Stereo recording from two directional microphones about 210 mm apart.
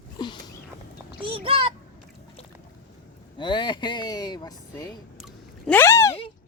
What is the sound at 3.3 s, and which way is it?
Speech, 20° left (ahead or behind).